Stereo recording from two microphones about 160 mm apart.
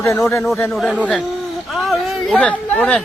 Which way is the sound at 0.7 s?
Centre (ahead or behind).